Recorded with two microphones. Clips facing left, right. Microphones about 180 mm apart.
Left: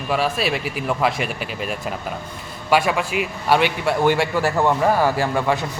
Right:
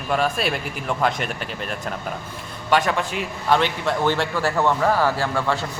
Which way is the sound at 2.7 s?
10° left (ahead or behind).